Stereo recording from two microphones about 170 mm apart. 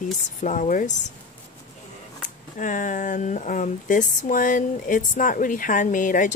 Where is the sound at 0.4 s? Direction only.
50° left (ahead or behind).